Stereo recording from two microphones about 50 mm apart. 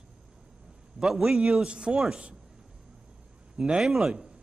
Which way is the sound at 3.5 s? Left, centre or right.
Centre.